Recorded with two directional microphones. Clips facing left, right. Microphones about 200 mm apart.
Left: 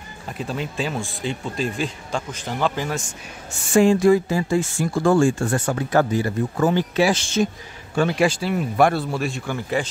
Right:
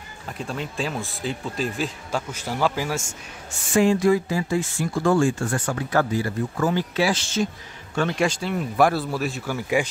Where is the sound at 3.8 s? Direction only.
30° left (ahead or behind).